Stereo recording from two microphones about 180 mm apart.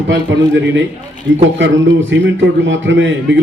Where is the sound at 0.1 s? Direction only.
90° right.